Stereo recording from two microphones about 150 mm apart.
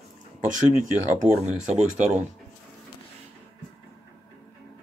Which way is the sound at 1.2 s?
55° right (ahead or behind).